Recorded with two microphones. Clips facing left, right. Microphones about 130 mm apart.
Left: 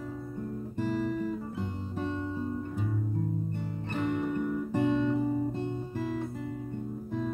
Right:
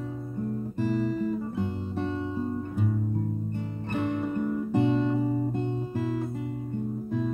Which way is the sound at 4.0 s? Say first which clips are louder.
Right 1 dB; 25° right (ahead or behind).